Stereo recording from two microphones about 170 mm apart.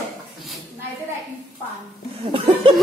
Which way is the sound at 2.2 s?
30° right (ahead or behind).